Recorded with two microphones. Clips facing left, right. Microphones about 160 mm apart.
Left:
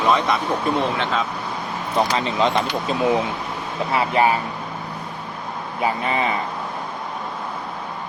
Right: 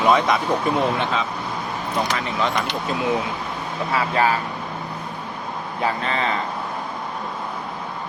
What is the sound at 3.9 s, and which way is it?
Speech, 25° left (ahead or behind).